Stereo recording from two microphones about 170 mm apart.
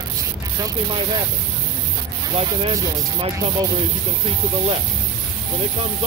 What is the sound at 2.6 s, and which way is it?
Speech, 30° right (ahead or behind).